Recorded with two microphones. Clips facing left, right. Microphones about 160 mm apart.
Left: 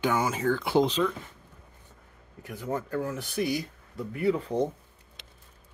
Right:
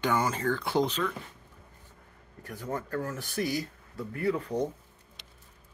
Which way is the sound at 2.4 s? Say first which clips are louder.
Left 3 dB; centre (ahead or behind).